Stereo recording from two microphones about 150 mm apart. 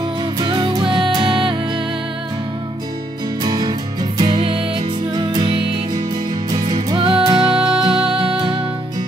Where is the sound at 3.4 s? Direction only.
30° right (ahead or behind).